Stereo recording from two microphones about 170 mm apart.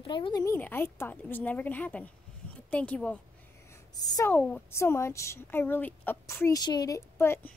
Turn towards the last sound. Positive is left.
turn(degrees=15)  # may be behind; listen again after turning